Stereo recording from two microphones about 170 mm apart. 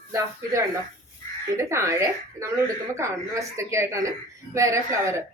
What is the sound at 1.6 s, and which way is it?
A woman's voice, 15° right (ahead or behind).